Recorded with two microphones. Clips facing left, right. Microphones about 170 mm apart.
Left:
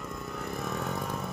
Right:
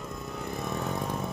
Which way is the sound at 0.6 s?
20° right (ahead or behind).